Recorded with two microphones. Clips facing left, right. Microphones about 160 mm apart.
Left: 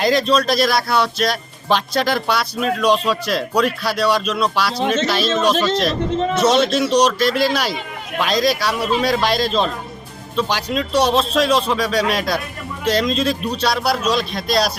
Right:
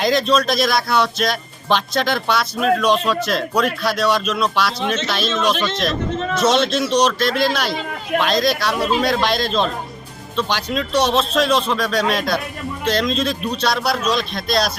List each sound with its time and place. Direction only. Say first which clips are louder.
0.0 s speech: left 1 dB; 5° left (ahead or behind)
5.3 s speech: left 2 dB; 40° left (ahead or behind)
6.4 s a man's voice: even; centre (ahead or behind)